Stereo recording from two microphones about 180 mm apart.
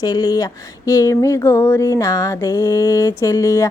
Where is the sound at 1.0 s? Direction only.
15° left (ahead or behind).